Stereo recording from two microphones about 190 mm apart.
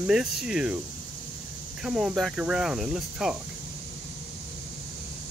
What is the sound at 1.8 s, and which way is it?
Speech, 5° right (ahead or behind).